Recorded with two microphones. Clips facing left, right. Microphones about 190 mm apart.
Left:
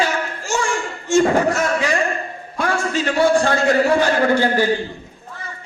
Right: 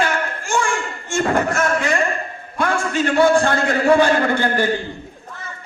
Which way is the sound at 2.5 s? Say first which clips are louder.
Right 1 dB; 55° right (ahead or behind).